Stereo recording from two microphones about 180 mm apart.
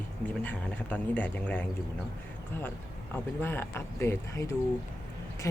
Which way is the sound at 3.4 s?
15° left (ahead or behind).